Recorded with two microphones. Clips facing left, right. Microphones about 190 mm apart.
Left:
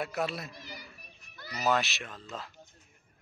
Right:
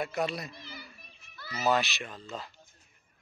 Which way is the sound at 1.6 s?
Centre (ahead or behind).